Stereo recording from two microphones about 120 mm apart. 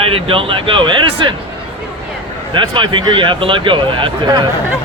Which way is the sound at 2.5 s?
40° right (ahead or behind).